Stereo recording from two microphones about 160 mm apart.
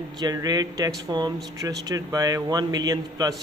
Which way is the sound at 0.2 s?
25° right (ahead or behind).